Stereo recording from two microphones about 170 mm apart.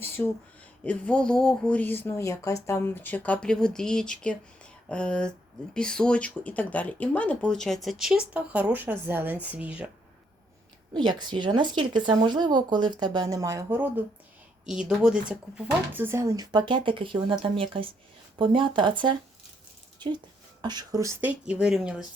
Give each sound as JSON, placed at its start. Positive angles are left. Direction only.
{"t": 0.2, "sound": "speech", "side_deg": 10}
{"t": 10.9, "sound": "speech", "side_deg": -25}